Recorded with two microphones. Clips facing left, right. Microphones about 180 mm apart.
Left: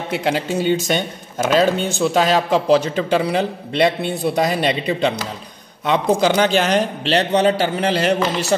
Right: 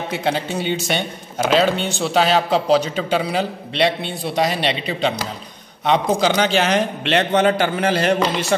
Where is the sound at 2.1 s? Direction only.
45° left (ahead or behind).